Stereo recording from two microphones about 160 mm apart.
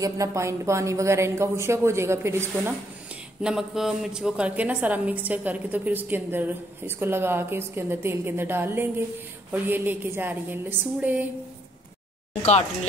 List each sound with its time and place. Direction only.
0.0 s a woman's voice: 20° right (ahead or behind)
3.4 s a woman's voice: 5° right (ahead or behind)